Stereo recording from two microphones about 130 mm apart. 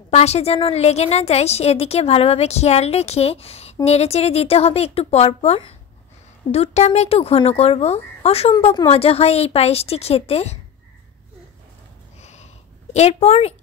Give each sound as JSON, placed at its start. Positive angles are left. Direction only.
{"t": 0.1, "sound": "a woman's voice", "side_deg": 55}
{"t": 12.2, "sound": "a sound", "side_deg": 60}
{"t": 12.9, "sound": "a woman's voice", "side_deg": 55}